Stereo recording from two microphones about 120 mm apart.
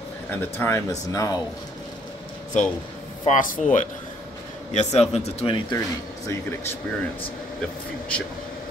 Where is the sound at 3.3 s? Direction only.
75° left (ahead or behind).